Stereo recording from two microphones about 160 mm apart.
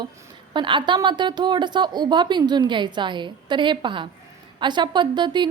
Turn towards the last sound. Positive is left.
turn(degrees=-30)  # may be behind; listen again after turning